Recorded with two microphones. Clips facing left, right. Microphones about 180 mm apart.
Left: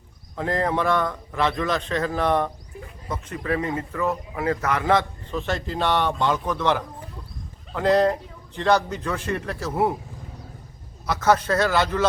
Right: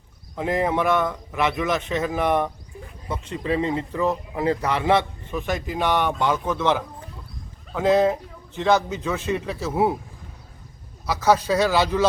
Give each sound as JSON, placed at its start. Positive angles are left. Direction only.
{"t": 0.3, "sound": "a man's voice", "side_deg": -15}
{"t": 11.0, "sound": "a man's voice", "side_deg": -5}